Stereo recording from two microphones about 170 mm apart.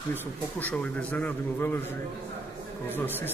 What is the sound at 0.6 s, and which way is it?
A man's voice, 5° left (ahead or behind).